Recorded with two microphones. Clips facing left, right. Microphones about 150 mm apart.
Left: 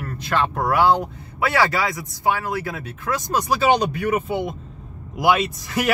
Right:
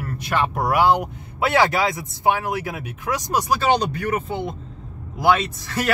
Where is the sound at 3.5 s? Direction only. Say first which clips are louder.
Left 2 dB; 10° left (ahead or behind).